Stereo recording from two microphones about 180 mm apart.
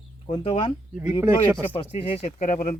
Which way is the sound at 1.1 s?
10° right (ahead or behind).